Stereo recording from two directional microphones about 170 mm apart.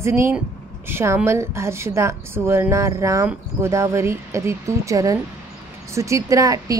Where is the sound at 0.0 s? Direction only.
15° right (ahead or behind).